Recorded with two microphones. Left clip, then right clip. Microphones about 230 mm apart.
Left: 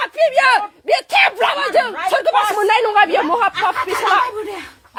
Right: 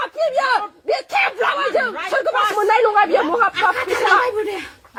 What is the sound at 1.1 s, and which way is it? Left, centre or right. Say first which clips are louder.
Speech: left 3 dB; left.